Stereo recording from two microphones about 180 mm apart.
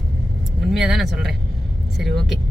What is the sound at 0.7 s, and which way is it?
Speech, centre (ahead or behind).